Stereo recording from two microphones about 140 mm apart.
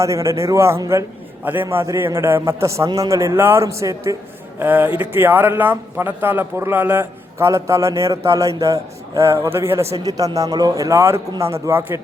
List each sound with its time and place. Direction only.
0.0 s speech: 20° right (ahead or behind)